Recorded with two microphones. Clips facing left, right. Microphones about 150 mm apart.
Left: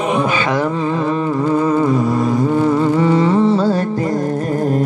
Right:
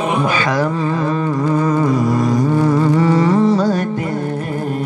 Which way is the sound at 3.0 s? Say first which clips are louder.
Even; 25° left (ahead or behind).